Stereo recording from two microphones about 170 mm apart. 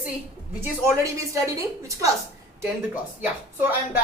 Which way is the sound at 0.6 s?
15° right (ahead or behind).